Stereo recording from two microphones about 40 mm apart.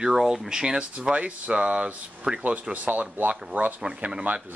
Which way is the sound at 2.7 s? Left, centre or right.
Right.